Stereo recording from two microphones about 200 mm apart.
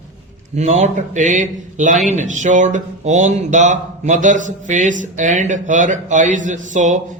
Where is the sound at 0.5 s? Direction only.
35° right (ahead or behind).